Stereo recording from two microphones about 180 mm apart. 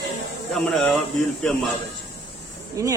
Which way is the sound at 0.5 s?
Centre (ahead or behind).